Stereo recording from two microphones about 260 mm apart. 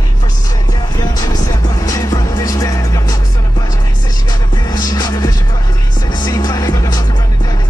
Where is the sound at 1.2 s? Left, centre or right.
Centre.